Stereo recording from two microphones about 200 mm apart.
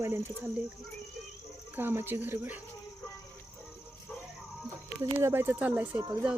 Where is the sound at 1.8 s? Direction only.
10° right (ahead or behind).